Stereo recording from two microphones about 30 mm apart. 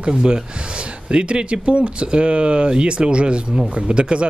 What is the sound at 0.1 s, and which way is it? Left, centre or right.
Speech, right.